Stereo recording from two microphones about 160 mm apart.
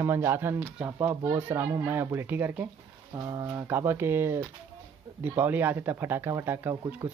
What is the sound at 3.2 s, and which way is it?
Speech, 25° right (ahead or behind).